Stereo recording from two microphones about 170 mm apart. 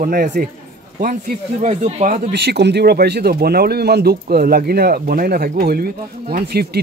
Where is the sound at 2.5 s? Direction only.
80° right.